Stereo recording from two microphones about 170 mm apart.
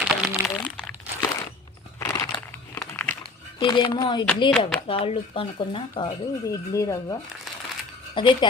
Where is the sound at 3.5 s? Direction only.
25° left (ahead or behind).